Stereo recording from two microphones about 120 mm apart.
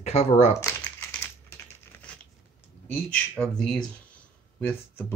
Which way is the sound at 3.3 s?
5° left (ahead or behind).